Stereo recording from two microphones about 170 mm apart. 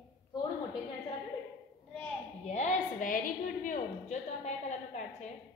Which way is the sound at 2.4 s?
45° left (ahead or behind).